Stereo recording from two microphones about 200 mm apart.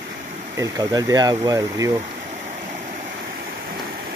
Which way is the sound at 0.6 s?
15° right (ahead or behind).